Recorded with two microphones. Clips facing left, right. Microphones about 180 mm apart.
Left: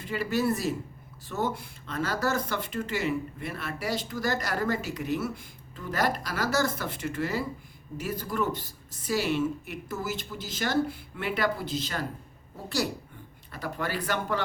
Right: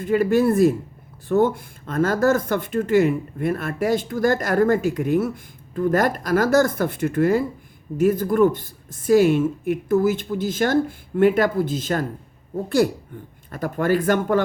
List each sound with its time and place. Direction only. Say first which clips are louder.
0.0 s speech: right 10 dB; 50° right (ahead or behind)